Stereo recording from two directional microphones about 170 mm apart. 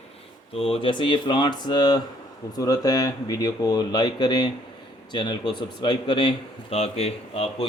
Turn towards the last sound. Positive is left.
turn(degrees=35)  # may be behind; listen again after turning